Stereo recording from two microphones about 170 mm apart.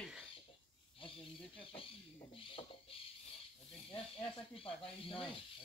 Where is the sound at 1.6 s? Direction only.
30° left (ahead or behind).